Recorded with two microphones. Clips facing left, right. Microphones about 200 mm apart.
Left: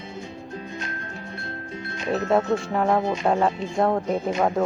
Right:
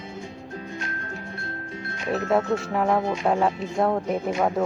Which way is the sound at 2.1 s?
25° left (ahead or behind).